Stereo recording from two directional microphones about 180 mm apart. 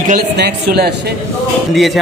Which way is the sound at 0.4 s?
65° right (ahead or behind).